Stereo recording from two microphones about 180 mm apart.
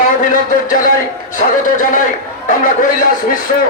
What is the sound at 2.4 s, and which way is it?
Speech, 45° left (ahead or behind).